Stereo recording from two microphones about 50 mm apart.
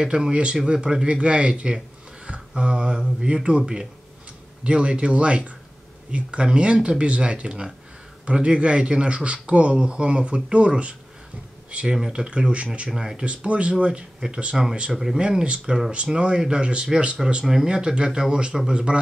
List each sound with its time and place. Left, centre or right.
0.0 s speech: centre
12.9 s speech: centre
13.2 s speech: right